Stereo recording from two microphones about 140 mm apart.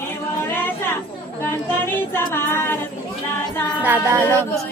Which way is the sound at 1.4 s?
15° left (ahead or behind).